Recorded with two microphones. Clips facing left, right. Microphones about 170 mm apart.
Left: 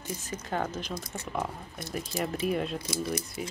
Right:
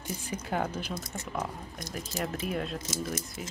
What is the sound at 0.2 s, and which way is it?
Speech, 10° right (ahead or behind).